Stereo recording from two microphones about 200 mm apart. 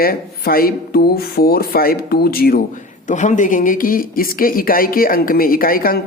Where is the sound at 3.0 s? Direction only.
35° left (ahead or behind).